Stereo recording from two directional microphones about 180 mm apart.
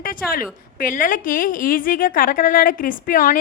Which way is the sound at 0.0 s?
50° left (ahead or behind).